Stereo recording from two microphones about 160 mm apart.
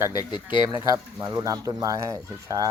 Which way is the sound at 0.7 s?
20° right (ahead or behind).